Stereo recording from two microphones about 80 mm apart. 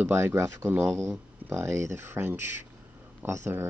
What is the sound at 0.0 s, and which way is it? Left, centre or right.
Speech, right.